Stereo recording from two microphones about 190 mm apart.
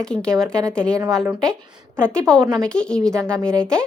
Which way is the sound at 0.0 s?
5° left (ahead or behind).